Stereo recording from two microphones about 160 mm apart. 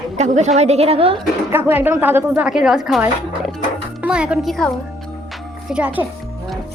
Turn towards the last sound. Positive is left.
turn(degrees=-10)  # may be behind; listen again after turning